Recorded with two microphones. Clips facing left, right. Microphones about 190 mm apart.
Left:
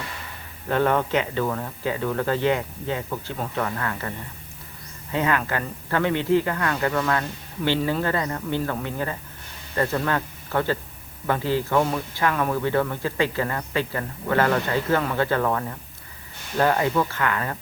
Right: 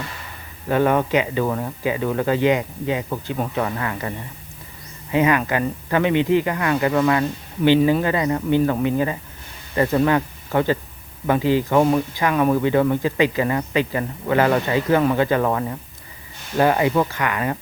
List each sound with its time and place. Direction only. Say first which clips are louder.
0.7 s speech: right 3 dB; 10° right (ahead or behind)
5.1 s speech: right 5 dB; 15° right (ahead or behind)